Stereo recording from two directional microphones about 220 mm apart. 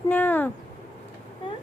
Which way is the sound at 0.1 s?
10° left (ahead or behind).